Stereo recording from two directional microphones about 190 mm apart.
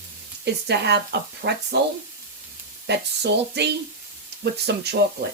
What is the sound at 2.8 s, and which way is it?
Speech, 60° right (ahead or behind).